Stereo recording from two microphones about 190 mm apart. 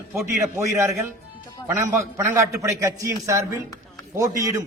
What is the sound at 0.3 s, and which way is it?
A man's voice, 15° right (ahead or behind).